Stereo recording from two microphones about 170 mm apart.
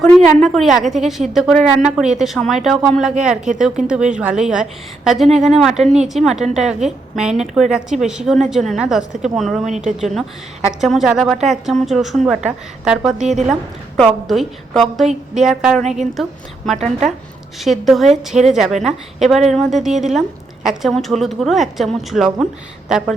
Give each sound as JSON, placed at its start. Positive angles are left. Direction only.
{"t": 0.0, "sound": "a woman's voice", "side_deg": 0}
{"t": 13.1, "sound": "a woman's voice", "side_deg": -40}
{"t": 13.9, "sound": "a woman's voice", "side_deg": 0}